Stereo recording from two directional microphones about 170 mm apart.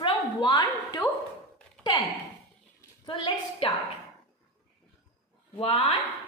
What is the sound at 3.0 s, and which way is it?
Speech, 30° left (ahead or behind).